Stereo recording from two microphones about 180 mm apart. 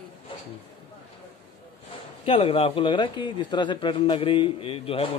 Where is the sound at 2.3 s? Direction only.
30° left (ahead or behind).